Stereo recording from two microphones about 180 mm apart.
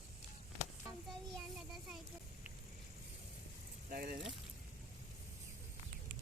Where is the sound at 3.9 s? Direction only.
50° right (ahead or behind).